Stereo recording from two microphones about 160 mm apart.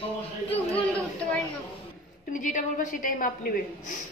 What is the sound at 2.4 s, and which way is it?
Speech, 50° left (ahead or behind).